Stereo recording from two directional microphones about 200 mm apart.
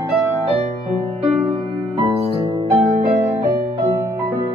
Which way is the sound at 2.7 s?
35° right (ahead or behind).